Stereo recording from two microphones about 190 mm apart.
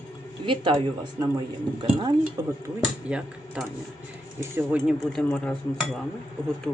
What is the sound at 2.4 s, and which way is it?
Speech, 20° right (ahead or behind).